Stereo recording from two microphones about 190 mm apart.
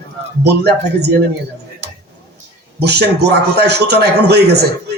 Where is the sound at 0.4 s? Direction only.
60° right (ahead or behind).